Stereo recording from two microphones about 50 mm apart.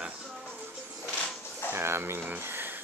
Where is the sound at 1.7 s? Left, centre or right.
Right.